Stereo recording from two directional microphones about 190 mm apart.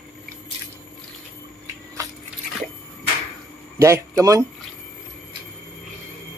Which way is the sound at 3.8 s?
15° right (ahead or behind).